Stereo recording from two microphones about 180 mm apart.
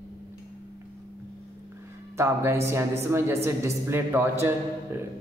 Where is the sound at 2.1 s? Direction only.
15° right (ahead or behind).